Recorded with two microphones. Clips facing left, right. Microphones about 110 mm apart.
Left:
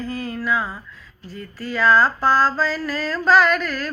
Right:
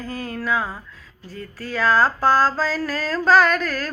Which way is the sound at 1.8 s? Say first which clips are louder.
Left 1 dB; 40° right (ahead or behind).